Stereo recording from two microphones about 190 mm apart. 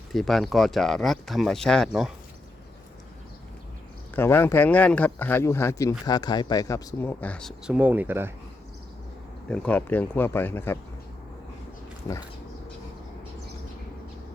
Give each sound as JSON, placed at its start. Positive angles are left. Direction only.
{"t": 0.1, "sound": "speech", "side_deg": 0}
{"t": 4.1, "sound": "speech", "side_deg": 10}
{"t": 7.7, "sound": "speech", "side_deg": -10}
{"t": 9.5, "sound": "speech", "side_deg": 10}